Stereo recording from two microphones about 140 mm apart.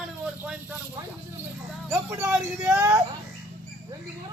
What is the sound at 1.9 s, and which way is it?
Speech, 20° right (ahead or behind).